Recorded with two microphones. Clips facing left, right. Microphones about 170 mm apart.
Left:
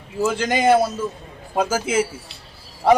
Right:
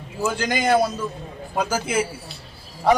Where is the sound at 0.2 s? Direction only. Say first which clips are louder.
Left 3 dB; 30° left (ahead or behind).